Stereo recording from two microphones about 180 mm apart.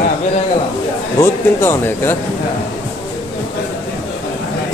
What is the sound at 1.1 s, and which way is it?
Speech, 15° left (ahead or behind).